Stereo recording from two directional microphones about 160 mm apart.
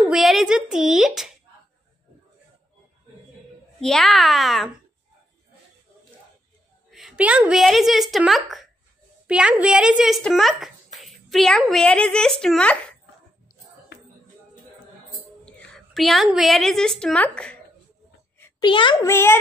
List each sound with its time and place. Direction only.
0.1 s speech: centre (ahead or behind)
3.8 s speech: centre (ahead or behind)
6.9 s a woman's voice: centre (ahead or behind)
15.4 s a sound: 5° left (ahead or behind)
16.3 s speech: centre (ahead or behind)
18.6 s a child's voice: 30° left (ahead or behind)
19.0 s a child's voice: 15° left (ahead or behind)